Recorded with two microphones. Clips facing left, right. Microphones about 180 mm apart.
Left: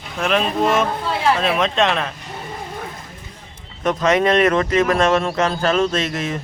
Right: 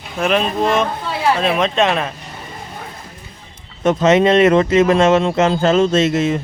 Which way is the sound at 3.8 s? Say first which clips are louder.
Right 4 dB; 25° right (ahead or behind).